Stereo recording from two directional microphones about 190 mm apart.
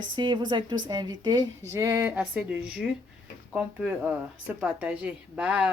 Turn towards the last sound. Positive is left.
turn(degrees=-5)  # may be behind; listen again after turning